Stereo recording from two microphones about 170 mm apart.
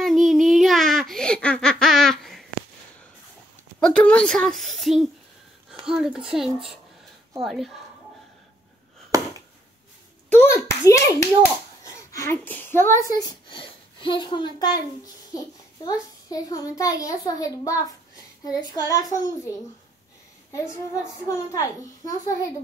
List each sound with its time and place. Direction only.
0.0 s a sound: centre (ahead or behind)
1.1 s baby laughter: 5° left (ahead or behind)
3.8 s a woman's voice: 5° left (ahead or behind)
9.1 s chop: 20° right (ahead or behind)
10.3 s a child's voice: 15° left (ahead or behind)
11.8 s whimper: 20° left (ahead or behind)
13.1 s a child's voice: 25° left (ahead or behind)
20.5 s a child's voice: 15° left (ahead or behind)